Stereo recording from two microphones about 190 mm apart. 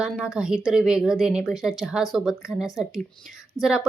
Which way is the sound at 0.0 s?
5° right (ahead or behind).